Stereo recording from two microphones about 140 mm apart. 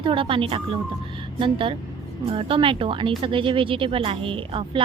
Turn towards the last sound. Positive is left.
turn(degrees=-40)  # may be behind; listen again after turning